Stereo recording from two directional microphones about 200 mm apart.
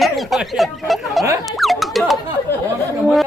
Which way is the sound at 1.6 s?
Centre (ahead or behind).